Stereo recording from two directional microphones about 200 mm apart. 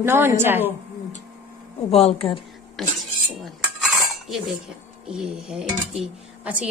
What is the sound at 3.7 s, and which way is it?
Dishes, centre (ahead or behind).